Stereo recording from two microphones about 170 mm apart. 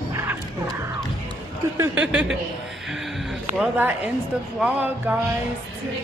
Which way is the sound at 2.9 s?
Centre (ahead or behind).